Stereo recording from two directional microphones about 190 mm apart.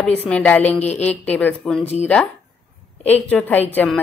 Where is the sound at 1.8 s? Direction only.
35° left (ahead or behind).